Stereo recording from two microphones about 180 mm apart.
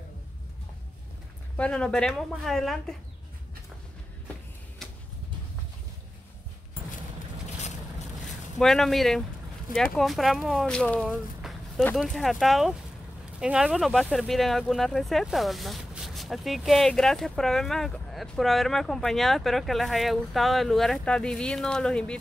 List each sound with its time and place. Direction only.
1.6 s speech: 5° left (ahead or behind)
8.5 s speech: centre (ahead or behind)